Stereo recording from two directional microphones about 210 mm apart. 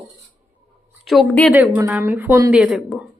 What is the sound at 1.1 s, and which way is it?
Speech, centre (ahead or behind).